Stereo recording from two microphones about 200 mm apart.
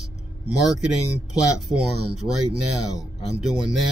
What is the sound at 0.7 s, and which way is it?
Speech, centre (ahead or behind).